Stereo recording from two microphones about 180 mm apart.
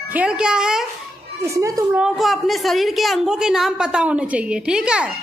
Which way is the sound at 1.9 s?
5° right (ahead or behind).